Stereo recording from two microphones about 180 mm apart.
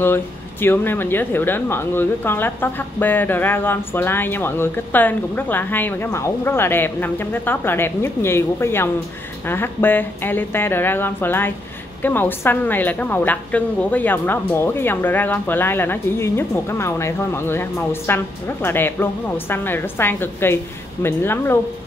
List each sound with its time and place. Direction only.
0.0 s speech: 10° left (ahead or behind)